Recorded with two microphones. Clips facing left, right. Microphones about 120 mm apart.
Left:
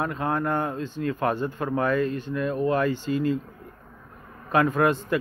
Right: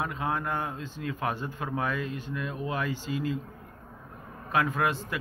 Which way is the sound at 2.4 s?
50° left (ahead or behind).